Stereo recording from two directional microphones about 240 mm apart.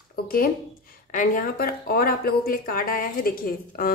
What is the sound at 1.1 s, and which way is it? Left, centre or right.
A woman's voice, left.